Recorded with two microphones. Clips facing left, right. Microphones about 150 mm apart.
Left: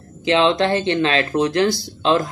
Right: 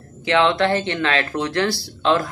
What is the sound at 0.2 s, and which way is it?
Speech, 20° left (ahead or behind).